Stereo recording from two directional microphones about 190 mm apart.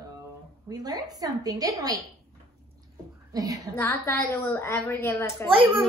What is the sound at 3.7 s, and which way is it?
A woman's voice, 10° left (ahead or behind).